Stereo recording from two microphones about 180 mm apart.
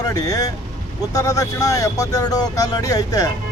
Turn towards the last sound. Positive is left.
turn(degrees=20)  # may be behind; listen again after turning